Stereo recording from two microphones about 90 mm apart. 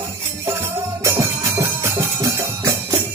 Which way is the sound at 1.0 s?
30° right (ahead or behind).